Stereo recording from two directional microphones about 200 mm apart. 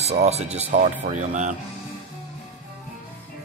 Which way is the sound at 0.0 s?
30° right (ahead or behind).